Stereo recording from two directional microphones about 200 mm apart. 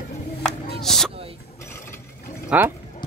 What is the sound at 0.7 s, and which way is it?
Chop, centre (ahead or behind).